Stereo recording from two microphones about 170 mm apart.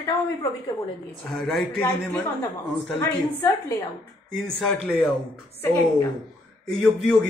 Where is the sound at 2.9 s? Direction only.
15° left (ahead or behind).